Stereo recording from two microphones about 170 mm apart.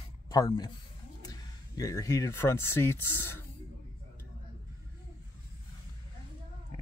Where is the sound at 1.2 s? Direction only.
20° left (ahead or behind).